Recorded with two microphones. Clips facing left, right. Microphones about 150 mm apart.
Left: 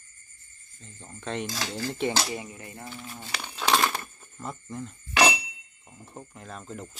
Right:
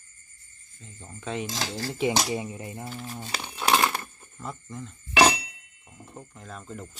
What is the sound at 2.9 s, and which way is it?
Speech, 35° right (ahead or behind).